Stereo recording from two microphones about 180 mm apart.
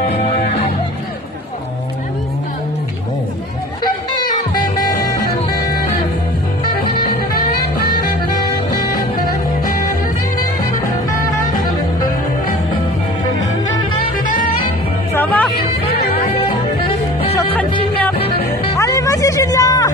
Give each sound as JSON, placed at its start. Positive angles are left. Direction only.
{"t": 15.1, "sound": "music", "side_deg": 10}
{"t": 16.3, "sound": "music", "side_deg": 30}
{"t": 18.8, "sound": "music", "side_deg": 15}